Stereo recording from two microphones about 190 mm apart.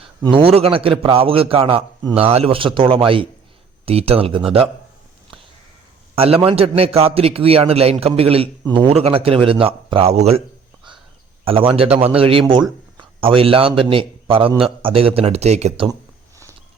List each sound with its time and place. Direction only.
0.2 s a man's voice: 25° right (ahead or behind)
6.1 s a man's voice: 30° right (ahead or behind)
11.4 s a man's voice: 30° right (ahead or behind)